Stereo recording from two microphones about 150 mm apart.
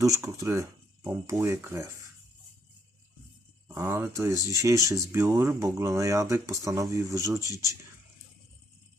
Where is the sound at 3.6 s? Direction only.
15° right (ahead or behind).